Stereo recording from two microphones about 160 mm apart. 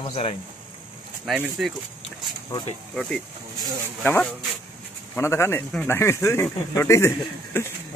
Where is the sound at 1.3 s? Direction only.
Centre (ahead or behind).